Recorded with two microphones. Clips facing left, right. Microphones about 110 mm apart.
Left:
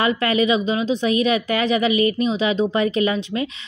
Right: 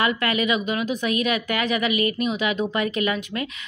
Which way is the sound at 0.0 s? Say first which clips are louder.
Left 4 dB; 30° left (ahead or behind).